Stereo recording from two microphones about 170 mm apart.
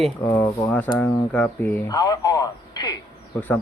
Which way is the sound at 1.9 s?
20° left (ahead or behind).